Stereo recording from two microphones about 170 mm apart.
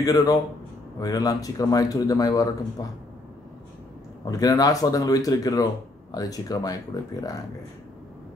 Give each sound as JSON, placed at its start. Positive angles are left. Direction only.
{"t": 0.0, "sound": "speech", "side_deg": 20}
{"t": 4.2, "sound": "speech", "side_deg": 20}